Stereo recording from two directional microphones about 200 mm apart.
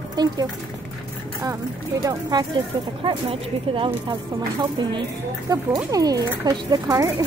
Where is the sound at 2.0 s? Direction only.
20° right (ahead or behind).